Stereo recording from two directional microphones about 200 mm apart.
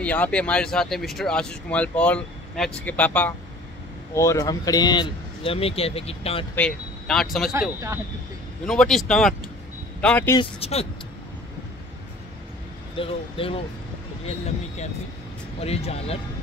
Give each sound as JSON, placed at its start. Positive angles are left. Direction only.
{"t": 0.0, "sound": "a man's voice", "side_deg": 5}
{"t": 6.5, "sound": "speech", "side_deg": 5}
{"t": 8.6, "sound": "speech", "side_deg": 0}
{"t": 10.3, "sound": "a man's voice", "side_deg": 25}
{"t": 12.9, "sound": "a man's voice", "side_deg": 25}